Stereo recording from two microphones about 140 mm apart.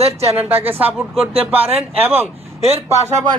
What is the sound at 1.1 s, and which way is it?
Speech, 45° right (ahead or behind).